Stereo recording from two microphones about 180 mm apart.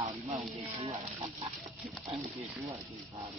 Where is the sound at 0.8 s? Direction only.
30° right (ahead or behind).